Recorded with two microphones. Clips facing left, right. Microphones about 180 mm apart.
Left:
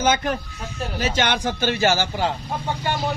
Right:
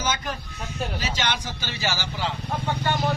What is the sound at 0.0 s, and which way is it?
Speech, 55° left (ahead or behind).